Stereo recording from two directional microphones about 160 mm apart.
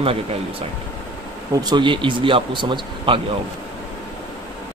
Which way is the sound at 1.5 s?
25° right (ahead or behind).